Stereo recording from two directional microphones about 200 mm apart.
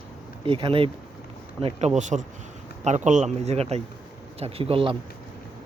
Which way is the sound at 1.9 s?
35° right (ahead or behind).